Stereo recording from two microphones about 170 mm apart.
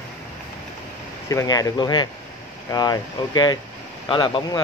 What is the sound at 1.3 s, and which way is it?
Speech, 20° left (ahead or behind).